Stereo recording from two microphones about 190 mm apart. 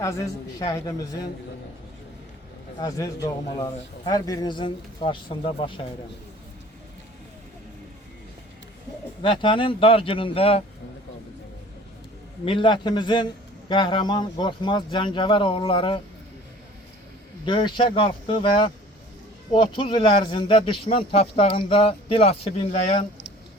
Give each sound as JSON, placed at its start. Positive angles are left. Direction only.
{"t": 0.0, "sound": "a man's voice", "side_deg": 15}
{"t": 2.7, "sound": "a man's voice", "side_deg": 20}
{"t": 9.2, "sound": "a man's voice", "side_deg": 25}
{"t": 12.5, "sound": "a man's voice", "side_deg": 25}
{"t": 17.4, "sound": "a man's voice", "side_deg": 25}